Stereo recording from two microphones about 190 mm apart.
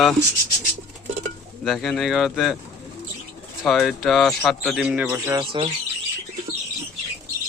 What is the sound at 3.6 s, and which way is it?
Speech, centre (ahead or behind).